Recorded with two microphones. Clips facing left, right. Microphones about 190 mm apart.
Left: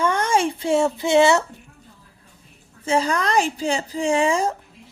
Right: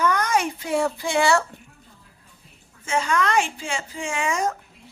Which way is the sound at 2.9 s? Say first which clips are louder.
Left 2 dB; 35° left (ahead or behind).